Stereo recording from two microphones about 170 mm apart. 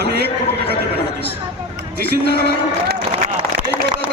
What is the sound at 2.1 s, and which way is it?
Speech, 65° right (ahead or behind).